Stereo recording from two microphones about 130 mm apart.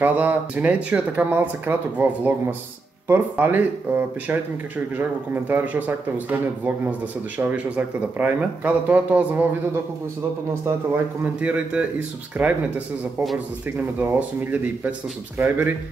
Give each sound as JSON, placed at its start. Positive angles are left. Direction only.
{"t": 0.0, "sound": "speech", "side_deg": -15}
{"t": 11.3, "sound": "speech", "side_deg": -10}
{"t": 13.9, "sound": "speech", "side_deg": -15}